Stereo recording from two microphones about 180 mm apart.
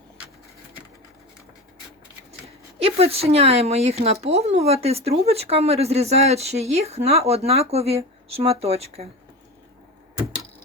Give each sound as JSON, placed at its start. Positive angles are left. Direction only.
{"t": 2.7, "sound": "speech", "side_deg": -35}